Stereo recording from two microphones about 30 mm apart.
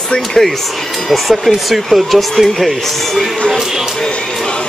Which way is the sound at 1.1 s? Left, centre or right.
Centre.